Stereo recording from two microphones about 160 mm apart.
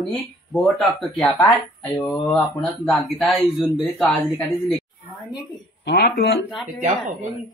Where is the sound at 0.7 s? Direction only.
Centre (ahead or behind).